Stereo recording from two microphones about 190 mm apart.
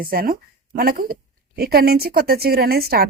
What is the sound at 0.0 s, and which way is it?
A woman's voice, 50° right (ahead or behind).